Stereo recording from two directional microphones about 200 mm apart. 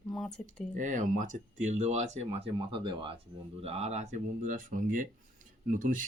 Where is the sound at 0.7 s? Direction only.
40° right (ahead or behind).